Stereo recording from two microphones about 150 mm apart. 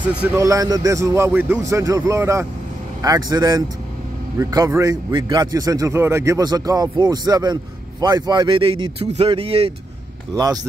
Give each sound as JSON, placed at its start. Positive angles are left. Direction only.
{"t": 0.4, "sound": "speech", "side_deg": -20}
{"t": 10.3, "sound": "speech", "side_deg": -25}